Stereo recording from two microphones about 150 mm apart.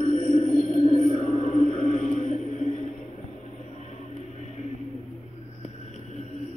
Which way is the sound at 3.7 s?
50° left (ahead or behind).